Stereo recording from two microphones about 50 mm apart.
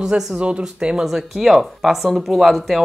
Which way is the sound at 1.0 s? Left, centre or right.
Centre.